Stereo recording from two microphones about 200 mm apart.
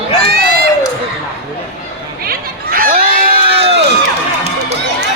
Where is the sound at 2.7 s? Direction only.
45° right (ahead or behind).